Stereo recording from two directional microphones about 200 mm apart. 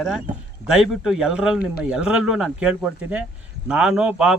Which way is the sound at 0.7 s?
5° right (ahead or behind).